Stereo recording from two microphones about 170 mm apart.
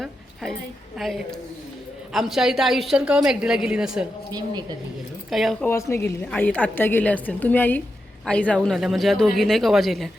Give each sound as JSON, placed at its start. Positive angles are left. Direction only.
{"t": 0.9, "sound": "a woman's voice", "side_deg": 0}
{"t": 4.3, "sound": "speech", "side_deg": -25}
{"t": 5.3, "sound": "a woman's voice", "side_deg": 0}
{"t": 5.6, "sound": "a woman's voice", "side_deg": 15}